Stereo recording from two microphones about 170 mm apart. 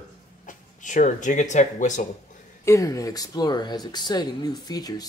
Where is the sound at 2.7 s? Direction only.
20° left (ahead or behind).